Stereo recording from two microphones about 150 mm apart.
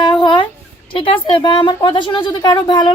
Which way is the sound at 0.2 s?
35° left (ahead or behind).